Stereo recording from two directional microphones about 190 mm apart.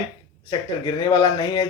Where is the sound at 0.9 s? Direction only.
20° left (ahead or behind).